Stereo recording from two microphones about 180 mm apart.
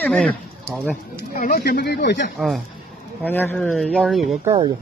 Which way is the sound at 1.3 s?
55° left (ahead or behind).